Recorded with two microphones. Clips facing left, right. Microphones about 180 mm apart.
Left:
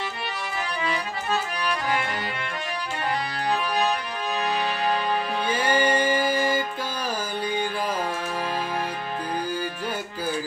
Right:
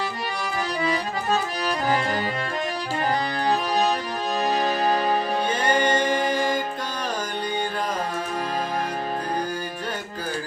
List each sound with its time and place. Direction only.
0.8 s accordion: 40° right (ahead or behind)
3.4 s music: 40° right (ahead or behind)
5.5 s music: 5° left (ahead or behind)